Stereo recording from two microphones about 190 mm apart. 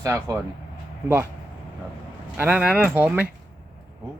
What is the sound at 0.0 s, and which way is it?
Speech, 15° right (ahead or behind).